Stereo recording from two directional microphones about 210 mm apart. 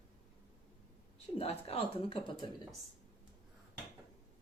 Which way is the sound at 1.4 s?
30° left (ahead or behind).